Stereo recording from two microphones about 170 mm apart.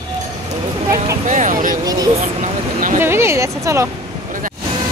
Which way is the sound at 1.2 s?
45° right (ahead or behind).